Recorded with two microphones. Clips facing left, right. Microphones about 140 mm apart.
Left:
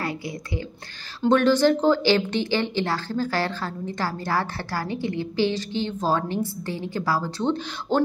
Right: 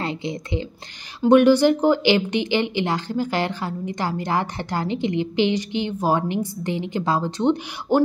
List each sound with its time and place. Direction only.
0.0 s a woman's voice: 20° right (ahead or behind)